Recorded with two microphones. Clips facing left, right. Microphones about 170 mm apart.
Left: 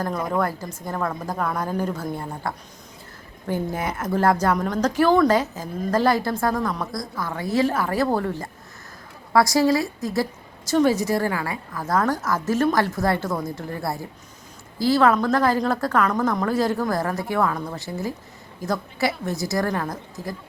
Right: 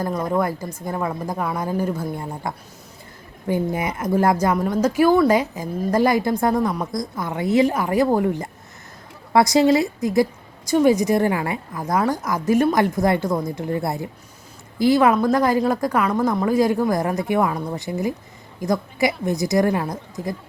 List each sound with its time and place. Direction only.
0.3 s speech: 10° right (ahead or behind)
3.5 s a woman's voice: 10° right (ahead or behind)